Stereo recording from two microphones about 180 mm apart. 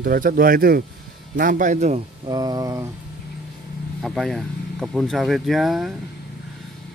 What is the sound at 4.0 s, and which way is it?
Speech, centre (ahead or behind).